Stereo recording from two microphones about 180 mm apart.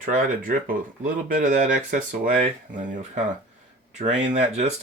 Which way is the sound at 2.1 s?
45° right (ahead or behind).